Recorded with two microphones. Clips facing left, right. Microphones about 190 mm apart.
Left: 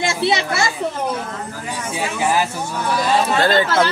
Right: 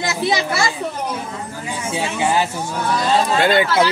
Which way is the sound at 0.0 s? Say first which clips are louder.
Left 1 dB; 25° left (ahead or behind).